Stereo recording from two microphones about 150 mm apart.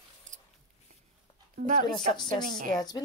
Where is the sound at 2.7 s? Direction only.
25° left (ahead or behind).